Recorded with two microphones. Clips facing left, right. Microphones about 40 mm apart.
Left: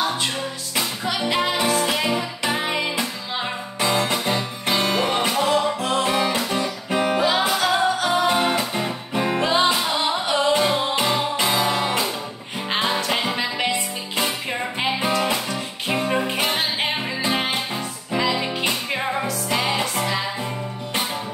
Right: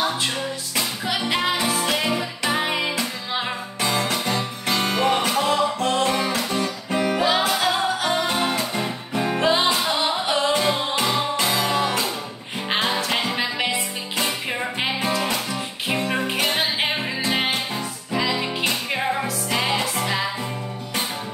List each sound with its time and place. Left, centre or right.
1.0 s music: centre
3.8 s music: centre
7.2 s music: centre
9.4 s music: centre
18.1 s music: centre